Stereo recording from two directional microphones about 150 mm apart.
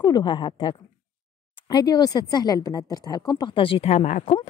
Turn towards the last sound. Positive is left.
turn(degrees=50)  # may be behind; listen again after turning